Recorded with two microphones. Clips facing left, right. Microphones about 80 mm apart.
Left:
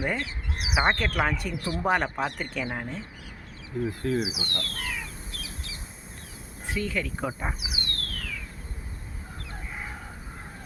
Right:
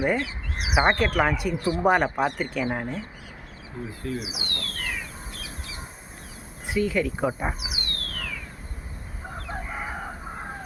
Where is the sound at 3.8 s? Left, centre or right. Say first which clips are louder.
Left 5 dB; left.